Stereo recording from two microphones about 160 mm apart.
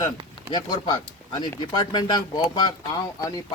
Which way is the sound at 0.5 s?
25° left (ahead or behind).